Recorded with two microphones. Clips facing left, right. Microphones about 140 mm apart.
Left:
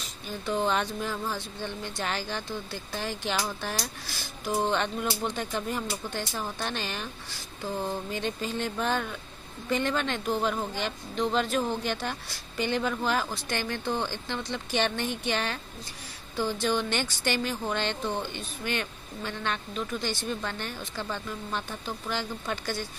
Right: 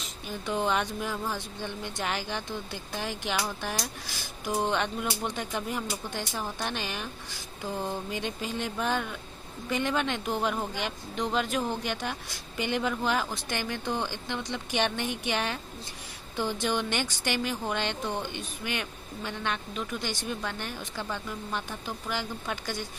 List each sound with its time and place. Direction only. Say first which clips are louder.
0.5 s a woman's voice: left 1 dB; 10° right (ahead or behind)
4.5 s a woman's voice: left 1 dB; 10° right (ahead or behind)
8.1 s a woman's voice: left 2 dB; 10° right (ahead or behind)